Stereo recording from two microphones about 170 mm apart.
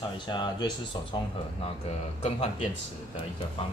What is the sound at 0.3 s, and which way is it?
Speech, 25° left (ahead or behind).